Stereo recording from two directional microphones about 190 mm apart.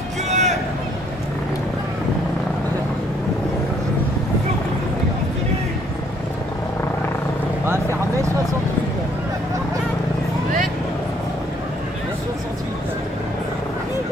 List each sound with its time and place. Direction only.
0.3 s vehicle: 40° right (ahead or behind)
7.6 s vehicle: 15° right (ahead or behind)